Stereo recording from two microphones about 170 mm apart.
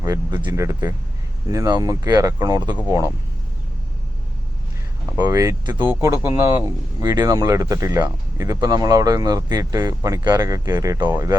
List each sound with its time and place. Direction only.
0.0 s speech: 20° right (ahead or behind)
5.1 s speech: 20° right (ahead or behind)